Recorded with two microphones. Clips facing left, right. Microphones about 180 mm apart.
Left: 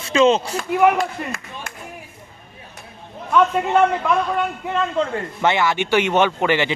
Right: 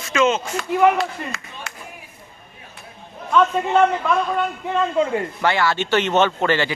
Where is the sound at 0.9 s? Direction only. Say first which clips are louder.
Left 1 dB; 50° left (ahead or behind).